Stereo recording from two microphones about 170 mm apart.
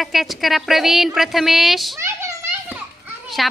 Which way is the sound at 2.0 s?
15° right (ahead or behind).